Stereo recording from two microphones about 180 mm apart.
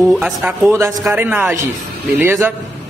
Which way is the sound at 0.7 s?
15° right (ahead or behind).